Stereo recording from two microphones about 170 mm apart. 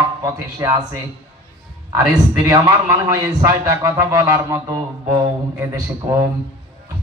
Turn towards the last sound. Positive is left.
turn(degrees=-20)  # may be behind; listen again after turning